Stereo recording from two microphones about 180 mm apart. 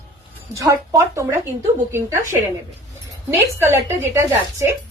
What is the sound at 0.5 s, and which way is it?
Speech, 20° right (ahead or behind).